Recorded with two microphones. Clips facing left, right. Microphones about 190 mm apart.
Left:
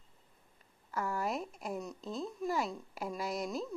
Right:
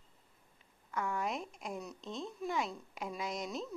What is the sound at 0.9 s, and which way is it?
Speech, 5° left (ahead or behind).